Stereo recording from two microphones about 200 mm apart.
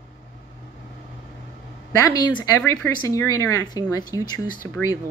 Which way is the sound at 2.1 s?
20° left (ahead or behind).